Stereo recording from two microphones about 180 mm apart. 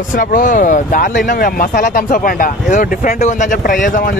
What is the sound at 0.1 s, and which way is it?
Speech, 45° left (ahead or behind).